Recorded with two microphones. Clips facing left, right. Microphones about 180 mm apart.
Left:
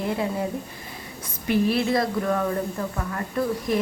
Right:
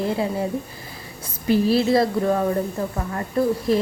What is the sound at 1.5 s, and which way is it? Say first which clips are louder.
A woman's voice: right 4 dB; 30° right (ahead or behind).